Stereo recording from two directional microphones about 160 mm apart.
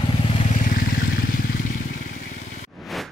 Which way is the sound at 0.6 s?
60° left (ahead or behind).